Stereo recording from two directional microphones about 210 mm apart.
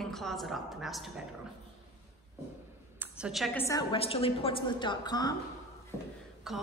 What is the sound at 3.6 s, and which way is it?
Speech, 15° left (ahead or behind).